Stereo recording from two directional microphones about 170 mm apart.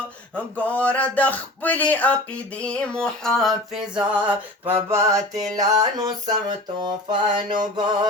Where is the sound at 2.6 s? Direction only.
5° left (ahead or behind); by 7.6 s 25° right (ahead or behind).